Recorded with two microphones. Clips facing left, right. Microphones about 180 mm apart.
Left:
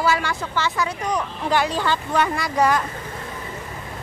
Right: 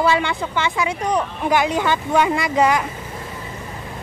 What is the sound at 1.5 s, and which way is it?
A woman's voice, 15° right (ahead or behind).